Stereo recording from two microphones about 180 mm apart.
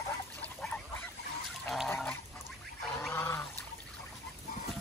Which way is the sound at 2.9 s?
10° left (ahead or behind).